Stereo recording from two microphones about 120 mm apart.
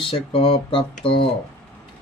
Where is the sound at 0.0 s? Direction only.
45° left (ahead or behind).